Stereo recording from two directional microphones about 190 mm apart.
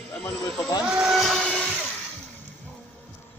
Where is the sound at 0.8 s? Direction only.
5° right (ahead or behind).